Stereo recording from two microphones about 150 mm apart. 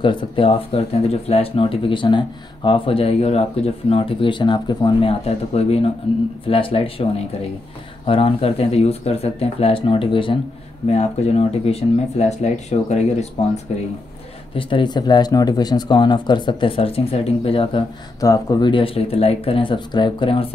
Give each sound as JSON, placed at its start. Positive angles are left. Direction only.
{"t": 0.0, "sound": "speech", "side_deg": 35}
{"t": 5.2, "sound": "speech", "side_deg": 45}
{"t": 10.9, "sound": "speech", "side_deg": 45}
{"t": 14.5, "sound": "speech", "side_deg": 35}
{"t": 18.2, "sound": "speech", "side_deg": 25}